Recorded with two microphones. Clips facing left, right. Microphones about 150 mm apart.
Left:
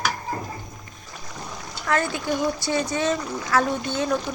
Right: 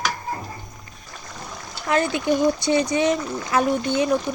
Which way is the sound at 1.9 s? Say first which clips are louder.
Right 4 dB; 20° right (ahead or behind).